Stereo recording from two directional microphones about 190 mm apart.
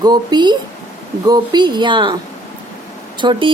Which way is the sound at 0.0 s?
20° right (ahead or behind).